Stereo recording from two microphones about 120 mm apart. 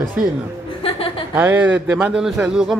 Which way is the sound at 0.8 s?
50° left (ahead or behind).